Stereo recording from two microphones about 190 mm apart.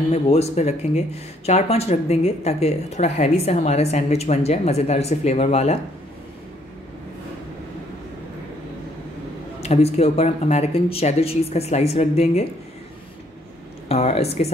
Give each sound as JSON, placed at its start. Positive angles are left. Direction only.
{"t": 0.1, "sound": "speech", "side_deg": 35}
{"t": 9.6, "sound": "speech", "side_deg": 35}
{"t": 13.8, "sound": "speech", "side_deg": 35}